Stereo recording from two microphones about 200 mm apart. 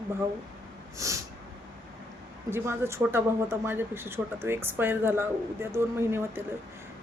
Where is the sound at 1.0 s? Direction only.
15° right (ahead or behind).